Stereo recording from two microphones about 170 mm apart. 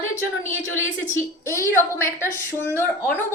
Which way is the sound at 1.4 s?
15° left (ahead or behind).